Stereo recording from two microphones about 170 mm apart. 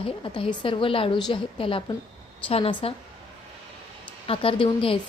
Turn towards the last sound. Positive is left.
turn(degrees=30)  # may be behind; listen again after turning